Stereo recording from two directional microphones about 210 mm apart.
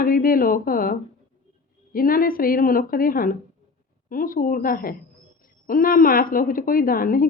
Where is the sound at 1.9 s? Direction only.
45° left (ahead or behind).